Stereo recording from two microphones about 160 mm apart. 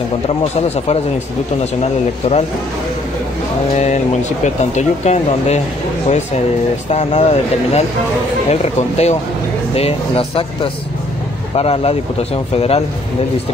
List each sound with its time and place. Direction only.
1.6 s a man's voice: 40° left (ahead or behind)
3.7 s speech: 45° left (ahead or behind)
6.9 s a man's voice: 40° left (ahead or behind)